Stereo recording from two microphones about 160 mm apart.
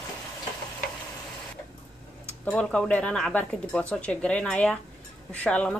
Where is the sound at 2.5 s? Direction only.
5° left (ahead or behind).